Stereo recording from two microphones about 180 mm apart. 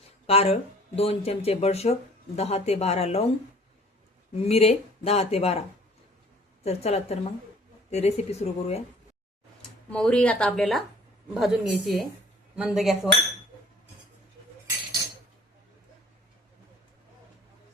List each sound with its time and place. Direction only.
0.3 s speech: 35° left (ahead or behind)
4.4 s speech: 35° left (ahead or behind)
6.7 s speech: 35° left (ahead or behind)
9.9 s speech: 5° left (ahead or behind)